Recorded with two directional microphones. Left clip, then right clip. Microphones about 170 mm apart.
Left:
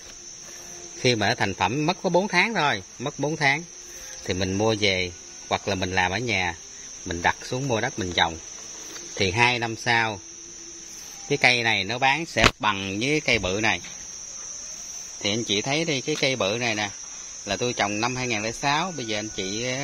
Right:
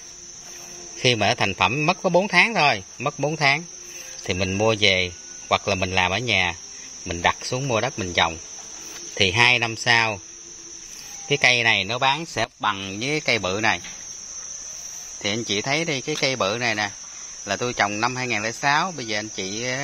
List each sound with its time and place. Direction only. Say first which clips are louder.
1.0 s speech: right 3 dB; 5° right (ahead or behind)
11.2 s speech: right 2 dB; centre (ahead or behind)
12.6 s speech: even; 45° left (ahead or behind)
12.9 s speech: left 1 dB; 25° left (ahead or behind)
13.2 s speech: right 3 dB; 10° left (ahead or behind)
13.5 s speech: right 2 dB; centre (ahead or behind)
15.2 s speech: right 1 dB; centre (ahead or behind)